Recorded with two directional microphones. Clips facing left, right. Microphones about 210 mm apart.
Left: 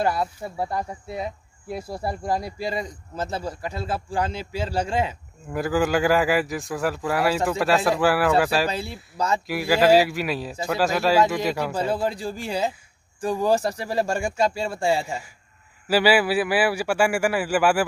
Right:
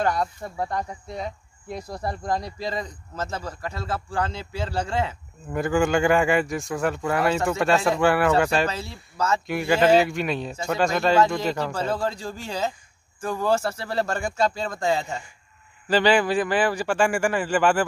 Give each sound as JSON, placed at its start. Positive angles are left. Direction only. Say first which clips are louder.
{"t": 0.0, "sound": "speech", "louder": "even", "side_deg": 5}
{"t": 5.5, "sound": "a man's voice", "louder": "even", "side_deg": 0}
{"t": 9.1, "sound": "speech", "louder": "even", "side_deg": 15}
{"t": 9.5, "sound": "a man's voice", "louder": "left 1 dB", "side_deg": 5}